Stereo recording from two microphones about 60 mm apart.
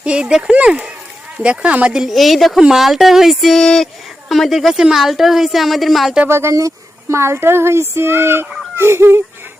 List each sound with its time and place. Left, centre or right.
0.0 s speech: centre
1.9 s a woman's voice: centre
6.2 s speech: right
6.5 s speech: right
8.7 s a sound: right